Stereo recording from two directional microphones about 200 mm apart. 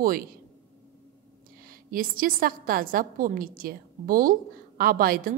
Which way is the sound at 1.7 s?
45° right (ahead or behind).